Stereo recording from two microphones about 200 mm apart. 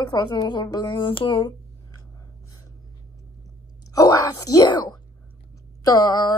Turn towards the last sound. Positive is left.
turn(degrees=20)  # may be behind; listen again after turning